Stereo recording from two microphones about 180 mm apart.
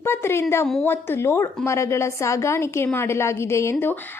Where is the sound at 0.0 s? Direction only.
15° left (ahead or behind).